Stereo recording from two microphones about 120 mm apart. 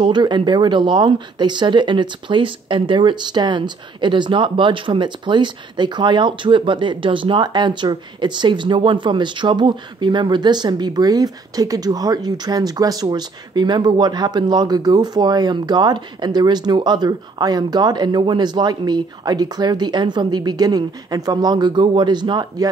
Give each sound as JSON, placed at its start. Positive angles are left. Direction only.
{"t": 0.0, "sound": "speech", "side_deg": -40}